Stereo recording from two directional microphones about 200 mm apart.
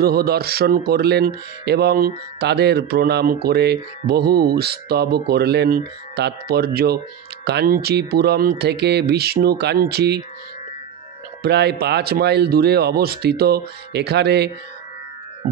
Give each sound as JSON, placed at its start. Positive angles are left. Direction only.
{"t": 0.0, "sound": "speech", "side_deg": -50}
{"t": 11.4, "sound": "speech", "side_deg": -55}